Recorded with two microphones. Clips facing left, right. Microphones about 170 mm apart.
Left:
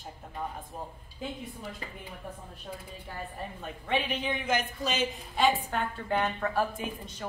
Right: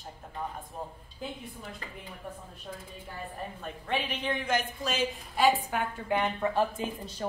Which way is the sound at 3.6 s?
5° left (ahead or behind).